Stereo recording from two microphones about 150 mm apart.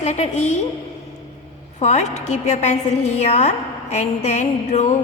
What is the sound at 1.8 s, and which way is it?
A woman's voice, 50° left (ahead or behind).